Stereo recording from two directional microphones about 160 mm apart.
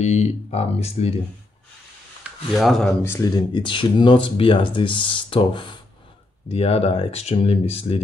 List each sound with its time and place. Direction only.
0.0 s speech: 45° left (ahead or behind)
2.5 s speech: centre (ahead or behind)
3.0 s speech: 20° left (ahead or behind)
3.5 s speech: 30° left (ahead or behind)